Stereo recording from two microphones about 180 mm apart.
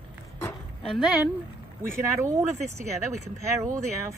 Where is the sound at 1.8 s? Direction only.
15° right (ahead or behind).